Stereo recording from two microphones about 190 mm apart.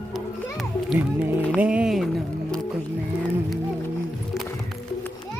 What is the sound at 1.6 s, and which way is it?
Speech, 5° right (ahead or behind).